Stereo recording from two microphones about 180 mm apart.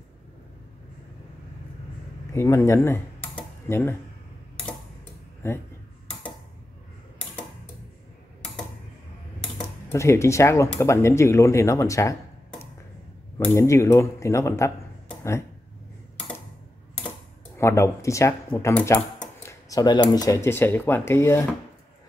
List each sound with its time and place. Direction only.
2.3 s speech: 15° left (ahead or behind)
5.4 s speech: 15° left (ahead or behind)
9.9 s speech: 15° left (ahead or behind)
13.5 s speech: 15° left (ahead or behind)
17.6 s speech: 15° left (ahead or behind)